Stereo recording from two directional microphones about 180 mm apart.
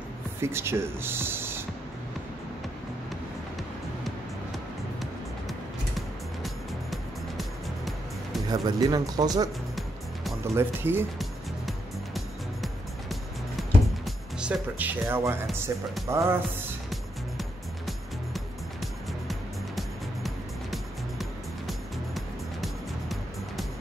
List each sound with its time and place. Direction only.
0.4 s speech: 15° right (ahead or behind)
5.5 s music: centre (ahead or behind)
8.5 s speech: 20° right (ahead or behind)
11.1 s music: centre (ahead or behind)
14.0 s speech: 5° right (ahead or behind)
16.9 s music: centre (ahead or behind)
20.2 s music: centre (ahead or behind)